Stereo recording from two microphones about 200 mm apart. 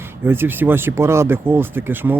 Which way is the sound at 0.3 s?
10° right (ahead or behind).